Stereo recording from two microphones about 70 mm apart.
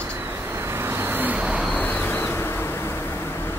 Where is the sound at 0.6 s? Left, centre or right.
Right; by 1.6 s centre.